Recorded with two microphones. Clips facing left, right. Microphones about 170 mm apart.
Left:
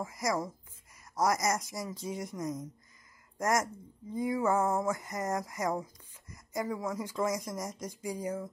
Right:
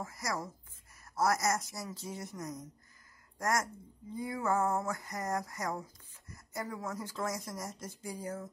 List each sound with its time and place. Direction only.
0.0 s speech: 20° left (ahead or behind)